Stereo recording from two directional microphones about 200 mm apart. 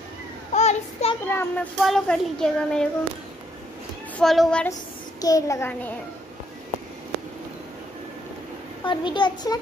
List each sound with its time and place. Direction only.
0.5 s child singing: 35° left (ahead or behind)
1.2 s a child's voice: 10° left (ahead or behind)
4.2 s speech: centre (ahead or behind)
5.2 s a child's voice: 15° left (ahead or behind)
8.8 s a child's voice: 25° left (ahead or behind)